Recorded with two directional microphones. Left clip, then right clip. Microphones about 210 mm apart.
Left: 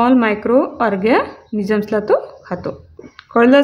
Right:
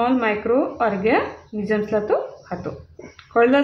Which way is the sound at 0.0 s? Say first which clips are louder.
Left 5 dB; 50° left (ahead or behind).